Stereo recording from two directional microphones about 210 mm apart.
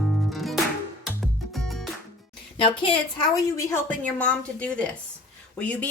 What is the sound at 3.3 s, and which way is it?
A woman's voice, 15° left (ahead or behind).